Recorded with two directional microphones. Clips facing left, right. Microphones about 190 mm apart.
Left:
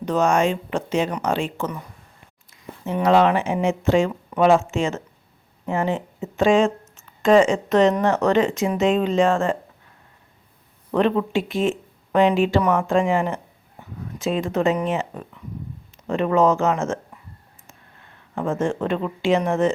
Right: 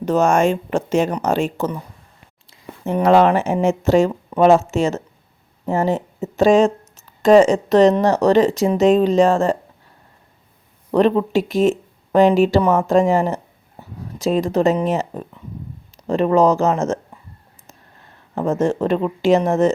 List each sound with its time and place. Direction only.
0.0 s speech: 45° right (ahead or behind)
2.8 s speech: 50° right (ahead or behind)
10.9 s speech: 40° right (ahead or behind)
18.3 s speech: 40° right (ahead or behind)